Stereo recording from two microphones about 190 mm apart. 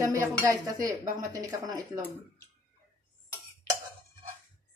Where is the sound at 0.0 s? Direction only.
15° right (ahead or behind).